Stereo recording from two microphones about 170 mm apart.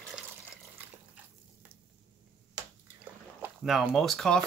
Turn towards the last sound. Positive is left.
turn(degrees=5)  # may be behind; listen again after turning